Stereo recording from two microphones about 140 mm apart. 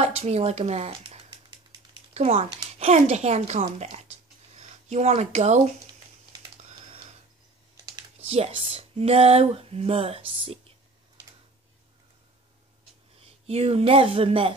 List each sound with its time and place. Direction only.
0.0 s speech: 50° right (ahead or behind)
2.1 s speech: 50° right (ahead or behind)
8.3 s speech: 45° right (ahead or behind)
13.5 s speech: 45° right (ahead or behind)